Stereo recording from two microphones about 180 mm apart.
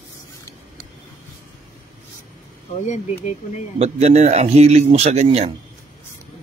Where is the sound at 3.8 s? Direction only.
35° right (ahead or behind).